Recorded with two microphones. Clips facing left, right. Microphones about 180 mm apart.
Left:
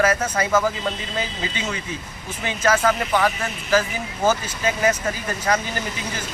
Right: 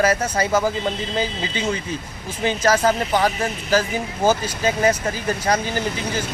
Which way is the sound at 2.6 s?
35° right (ahead or behind).